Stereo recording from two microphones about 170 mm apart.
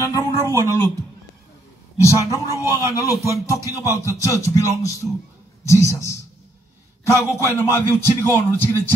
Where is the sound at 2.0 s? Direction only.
15° left (ahead or behind).